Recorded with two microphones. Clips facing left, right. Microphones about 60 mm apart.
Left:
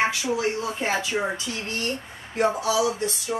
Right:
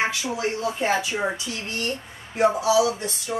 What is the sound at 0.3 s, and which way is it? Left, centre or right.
A woman's voice, centre.